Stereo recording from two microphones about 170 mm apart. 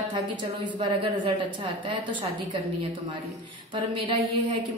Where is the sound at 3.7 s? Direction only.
30° right (ahead or behind).